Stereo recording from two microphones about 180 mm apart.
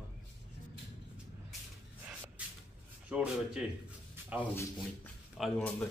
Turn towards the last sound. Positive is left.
turn(degrees=5)  # may be behind; listen again after turning